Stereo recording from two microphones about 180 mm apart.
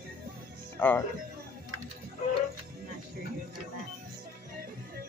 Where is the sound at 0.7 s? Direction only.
10° left (ahead or behind).